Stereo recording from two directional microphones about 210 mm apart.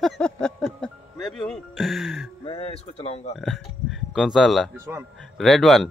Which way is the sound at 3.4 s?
Centre (ahead or behind).